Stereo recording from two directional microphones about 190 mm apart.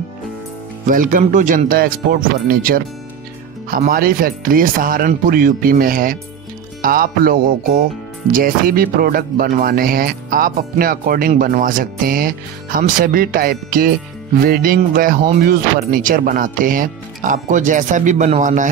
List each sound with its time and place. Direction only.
0.8 s speech: 45° right (ahead or behind)